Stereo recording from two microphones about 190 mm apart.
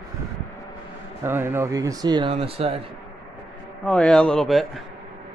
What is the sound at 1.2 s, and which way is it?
Speech, 10° right (ahead or behind).